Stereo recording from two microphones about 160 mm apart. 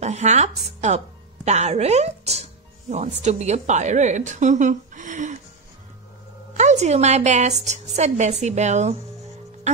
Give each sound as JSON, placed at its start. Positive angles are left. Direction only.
{"t": 0.0, "sound": "a woman's voice", "side_deg": -45}
{"t": 6.5, "sound": "a woman's voice", "side_deg": -45}